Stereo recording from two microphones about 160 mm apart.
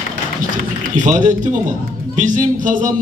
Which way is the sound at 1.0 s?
50° right (ahead or behind).